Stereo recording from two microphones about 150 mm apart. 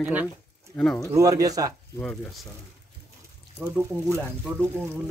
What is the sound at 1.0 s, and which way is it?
Speech, 20° right (ahead or behind).